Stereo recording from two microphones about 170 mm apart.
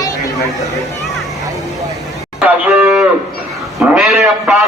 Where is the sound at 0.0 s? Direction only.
20° left (ahead or behind).